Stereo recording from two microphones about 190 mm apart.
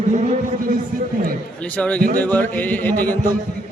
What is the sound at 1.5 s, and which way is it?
A man's voice, 5° left (ahead or behind).